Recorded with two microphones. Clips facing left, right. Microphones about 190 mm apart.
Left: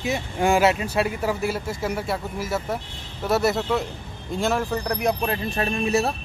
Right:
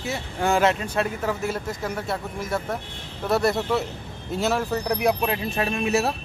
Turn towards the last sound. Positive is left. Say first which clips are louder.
# even
turn(degrees=0)  # may be behind; listen again after turning